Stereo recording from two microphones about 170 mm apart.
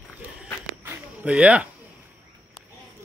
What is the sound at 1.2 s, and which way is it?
Speech, 5° right (ahead or behind).